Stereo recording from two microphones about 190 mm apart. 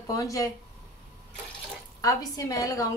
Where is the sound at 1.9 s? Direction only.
20° left (ahead or behind).